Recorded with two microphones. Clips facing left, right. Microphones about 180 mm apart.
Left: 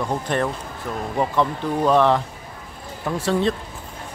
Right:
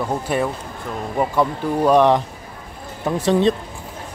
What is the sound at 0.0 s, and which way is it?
Speech, 5° right (ahead or behind).